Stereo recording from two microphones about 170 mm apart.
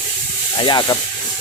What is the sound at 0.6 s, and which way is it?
Speech, 25° left (ahead or behind).